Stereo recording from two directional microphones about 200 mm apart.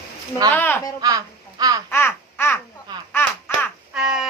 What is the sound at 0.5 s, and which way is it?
Speech, 10° left (ahead or behind).